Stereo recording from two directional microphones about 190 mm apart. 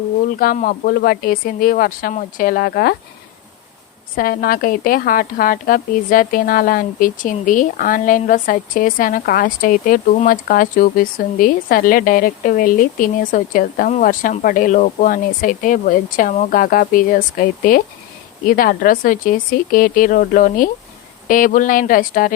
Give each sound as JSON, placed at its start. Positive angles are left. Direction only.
{"t": 0.3, "sound": "a woman's voice", "side_deg": 45}
{"t": 4.1, "sound": "a woman's voice", "side_deg": 50}